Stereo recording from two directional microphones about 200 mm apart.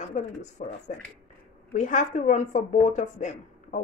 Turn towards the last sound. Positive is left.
turn(degrees=40)  # may be behind; listen again after turning